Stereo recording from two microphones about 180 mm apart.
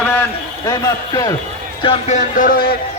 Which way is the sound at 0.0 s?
10° left (ahead or behind).